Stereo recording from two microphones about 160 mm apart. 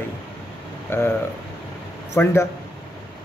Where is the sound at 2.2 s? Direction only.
15° left (ahead or behind).